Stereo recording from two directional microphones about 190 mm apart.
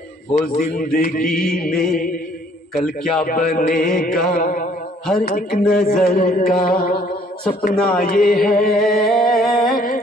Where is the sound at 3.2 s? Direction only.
50° left (ahead or behind).